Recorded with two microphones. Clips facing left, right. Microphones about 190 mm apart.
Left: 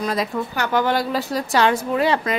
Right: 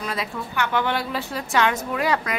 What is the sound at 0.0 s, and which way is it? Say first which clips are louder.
A woman's voice: left 6 dB; 40° left (ahead or behind).